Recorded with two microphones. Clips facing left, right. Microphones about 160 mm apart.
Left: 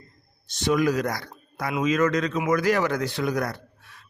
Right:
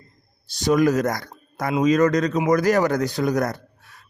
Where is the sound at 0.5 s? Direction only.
40° right (ahead or behind).